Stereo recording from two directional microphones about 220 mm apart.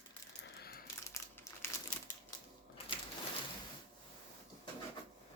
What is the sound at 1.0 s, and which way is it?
Crumpling, 15° left (ahead or behind).